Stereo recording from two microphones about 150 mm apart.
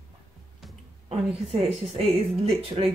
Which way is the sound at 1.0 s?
40° right (ahead or behind).